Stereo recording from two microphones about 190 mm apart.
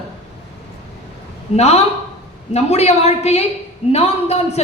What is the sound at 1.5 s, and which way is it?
A woman's voice, 35° left (ahead or behind).